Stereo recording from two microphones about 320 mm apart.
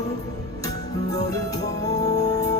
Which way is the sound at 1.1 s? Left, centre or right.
Centre.